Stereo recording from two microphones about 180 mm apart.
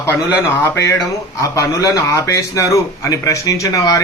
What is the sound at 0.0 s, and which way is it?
A man's voice, 15° left (ahead or behind).